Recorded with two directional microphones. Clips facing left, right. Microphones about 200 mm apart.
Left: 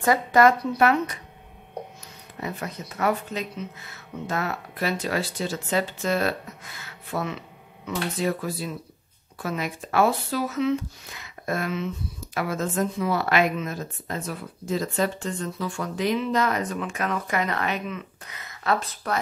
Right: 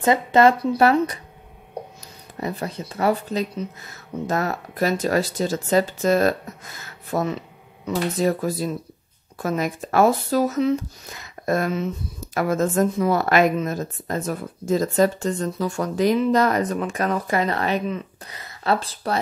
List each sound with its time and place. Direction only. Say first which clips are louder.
0.0 s a woman's voice: right 3 dB; 25° right (ahead or behind)
2.4 s a woman's voice: right 5 dB; 30° right (ahead or behind)